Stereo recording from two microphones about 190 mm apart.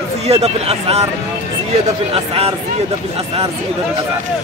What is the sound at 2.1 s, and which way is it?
Speech, 30° right (ahead or behind).